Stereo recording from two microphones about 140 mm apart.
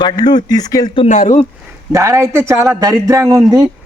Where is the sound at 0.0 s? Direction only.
30° left (ahead or behind).